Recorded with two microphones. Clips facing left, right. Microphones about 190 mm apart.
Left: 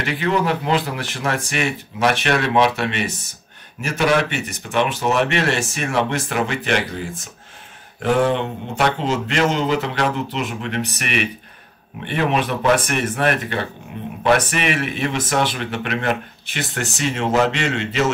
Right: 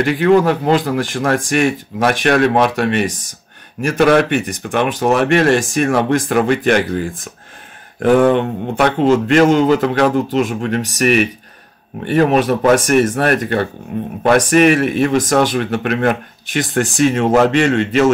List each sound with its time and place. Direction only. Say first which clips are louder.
0.0 s speech: right 9 dB; 50° right (ahead or behind)